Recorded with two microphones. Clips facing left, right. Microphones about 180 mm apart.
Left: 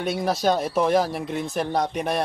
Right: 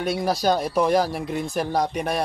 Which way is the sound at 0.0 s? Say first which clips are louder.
Even; centre (ahead or behind).